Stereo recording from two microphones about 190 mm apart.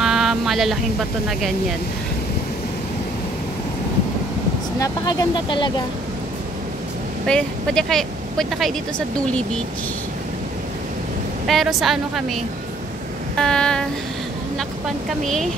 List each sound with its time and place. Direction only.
0.0 s a sound: centre (ahead or behind)
4.7 s speech: 20° left (ahead or behind)
7.2 s a woman's voice: 5° left (ahead or behind)
11.4 s a woman's voice: centre (ahead or behind)
13.4 s a woman's voice: 5° left (ahead or behind)
15.2 s a woman's voice: centre (ahead or behind)